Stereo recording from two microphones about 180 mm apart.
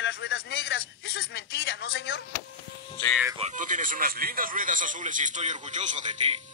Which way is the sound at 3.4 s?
45° right (ahead or behind).